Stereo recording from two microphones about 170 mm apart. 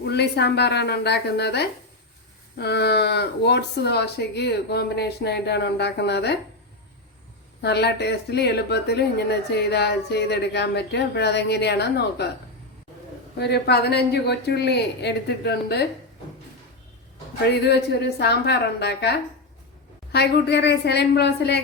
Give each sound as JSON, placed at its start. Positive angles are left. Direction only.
{"t": 0.0, "sound": "a woman's voice", "side_deg": 75}
{"t": 7.6, "sound": "speech", "side_deg": 75}
{"t": 13.4, "sound": "speech", "side_deg": 75}
{"t": 17.5, "sound": "speech", "side_deg": 75}
{"t": 20.1, "sound": "a woman's voice", "side_deg": 80}